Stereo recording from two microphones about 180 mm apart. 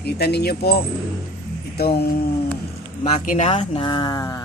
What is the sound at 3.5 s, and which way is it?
Speech, 30° left (ahead or behind).